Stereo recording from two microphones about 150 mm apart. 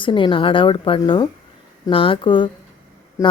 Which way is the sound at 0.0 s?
35° left (ahead or behind).